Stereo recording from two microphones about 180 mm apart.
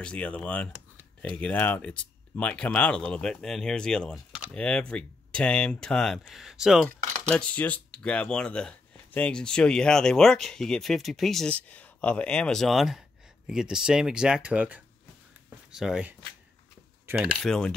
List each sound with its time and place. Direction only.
0.0 s speech: 5° left (ahead or behind)
17.0 s a sound: 5° right (ahead or behind)
17.4 s speech: 5° left (ahead or behind)